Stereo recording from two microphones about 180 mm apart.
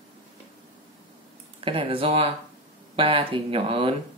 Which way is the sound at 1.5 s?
30° right (ahead or behind).